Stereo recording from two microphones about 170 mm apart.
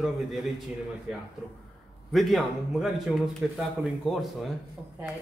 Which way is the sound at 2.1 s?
Centre (ahead or behind).